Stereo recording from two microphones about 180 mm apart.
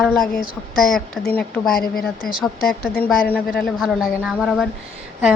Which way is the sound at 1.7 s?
55° left (ahead or behind).